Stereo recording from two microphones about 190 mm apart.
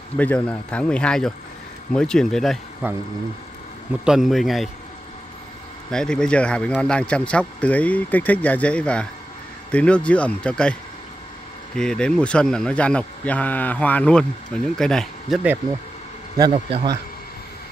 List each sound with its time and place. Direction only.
0.2 s speech: 5° left (ahead or behind)
2.8 s speech: 10° right (ahead or behind)
4.0 s speech: centre (ahead or behind)
5.9 s speech: 5° left (ahead or behind)
16.3 s speech: 25° right (ahead or behind)